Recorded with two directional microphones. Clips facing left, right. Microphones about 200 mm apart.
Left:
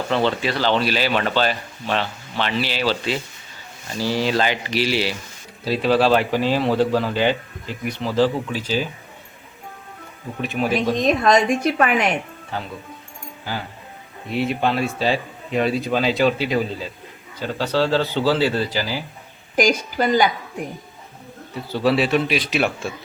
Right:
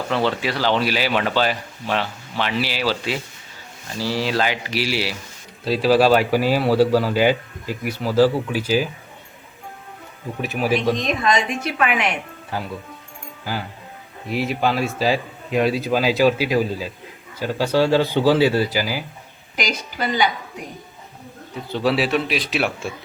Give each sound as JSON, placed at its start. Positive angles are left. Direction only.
{"t": 0.1, "sound": "a man's voice", "side_deg": -5}
{"t": 10.4, "sound": "a man's voice", "side_deg": -5}
{"t": 11.0, "sound": "a woman's voice", "side_deg": 45}
{"t": 14.3, "sound": "a man's voice", "side_deg": -5}
{"t": 19.5, "sound": "a woman's voice", "side_deg": 45}
{"t": 21.7, "sound": "a man's voice", "side_deg": 0}